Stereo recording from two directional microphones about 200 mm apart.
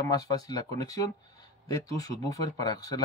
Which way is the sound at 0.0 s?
20° left (ahead or behind).